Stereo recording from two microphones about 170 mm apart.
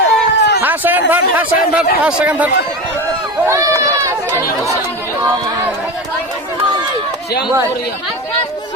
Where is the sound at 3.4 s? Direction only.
20° right (ahead or behind).